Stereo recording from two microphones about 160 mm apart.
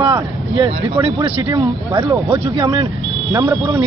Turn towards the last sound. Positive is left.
turn(degrees=-15)  # may be behind; listen again after turning